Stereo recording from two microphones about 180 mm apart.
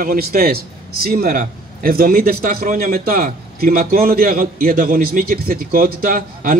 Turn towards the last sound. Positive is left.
turn(degrees=-50)  # may be behind; listen again after turning